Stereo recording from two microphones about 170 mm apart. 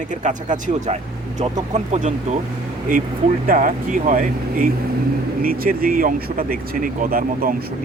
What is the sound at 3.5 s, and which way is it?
Speech, 50° right (ahead or behind).